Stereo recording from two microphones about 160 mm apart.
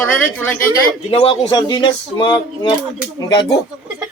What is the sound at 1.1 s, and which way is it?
Speech, 35° left (ahead or behind).